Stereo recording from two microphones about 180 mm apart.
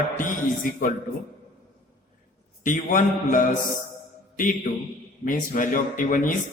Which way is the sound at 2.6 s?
45° left (ahead or behind).